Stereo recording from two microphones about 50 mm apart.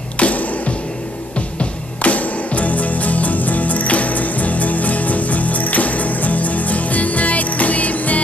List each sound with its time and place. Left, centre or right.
0.2 s music: left